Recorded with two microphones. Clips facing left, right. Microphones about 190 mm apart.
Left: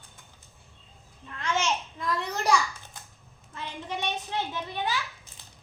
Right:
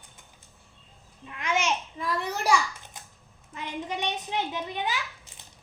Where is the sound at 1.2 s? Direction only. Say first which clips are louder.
Right 1 dB; 15° right (ahead or behind).